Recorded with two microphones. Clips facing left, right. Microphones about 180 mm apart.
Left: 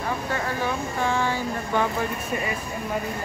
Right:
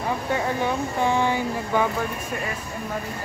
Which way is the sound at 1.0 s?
15° right (ahead or behind).